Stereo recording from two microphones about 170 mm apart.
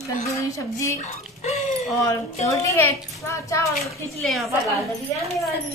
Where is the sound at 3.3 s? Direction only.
20° left (ahead or behind).